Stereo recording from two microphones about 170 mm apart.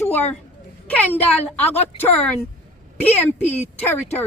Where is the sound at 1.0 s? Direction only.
10° left (ahead or behind).